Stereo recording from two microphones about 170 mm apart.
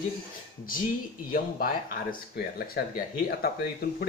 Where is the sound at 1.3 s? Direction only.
60° left (ahead or behind).